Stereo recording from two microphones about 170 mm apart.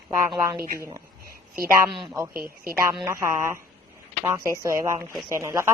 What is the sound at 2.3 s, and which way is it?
Speech, 60° right (ahead or behind).